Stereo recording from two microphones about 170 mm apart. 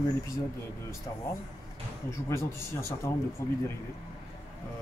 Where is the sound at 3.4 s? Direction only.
15° left (ahead or behind).